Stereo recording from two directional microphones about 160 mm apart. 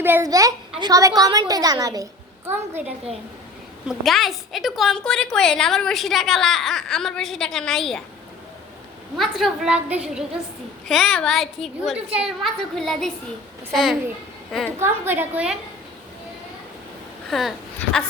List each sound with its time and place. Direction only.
0.0 s a woman's voice: 15° right (ahead or behind)
2.5 s a woman's voice: 15° right (ahead or behind)
3.8 s a woman's voice: centre (ahead or behind)
9.1 s a woman's voice: centre (ahead or behind)
14.8 s a woman's voice: 15° right (ahead or behind)
17.2 s speech: centre (ahead or behind)